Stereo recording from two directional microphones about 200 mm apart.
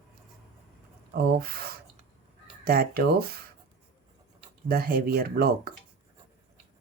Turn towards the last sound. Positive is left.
turn(degrees=-50)  # may be behind; listen again after turning